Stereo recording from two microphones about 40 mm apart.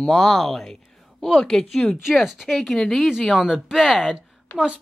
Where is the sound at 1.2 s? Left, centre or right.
Centre.